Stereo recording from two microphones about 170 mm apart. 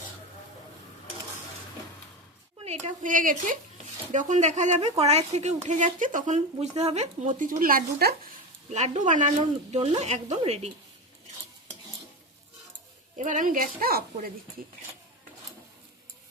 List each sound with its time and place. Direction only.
2.6 s speech: 45° right (ahead or behind); by 8.1 s 60° right (ahead or behind)
8.7 s speech: 45° right (ahead or behind)
13.1 s speech: 50° right (ahead or behind)